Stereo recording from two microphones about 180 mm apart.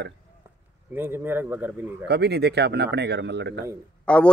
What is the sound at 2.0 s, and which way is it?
Speech, 70° right (ahead or behind).